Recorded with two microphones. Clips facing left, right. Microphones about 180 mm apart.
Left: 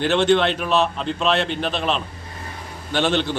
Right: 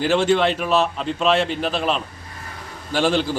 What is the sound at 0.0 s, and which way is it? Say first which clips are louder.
A man's voice: even; 5° right (ahead or behind).